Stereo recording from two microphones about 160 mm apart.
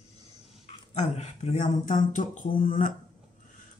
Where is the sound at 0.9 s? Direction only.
45° left (ahead or behind).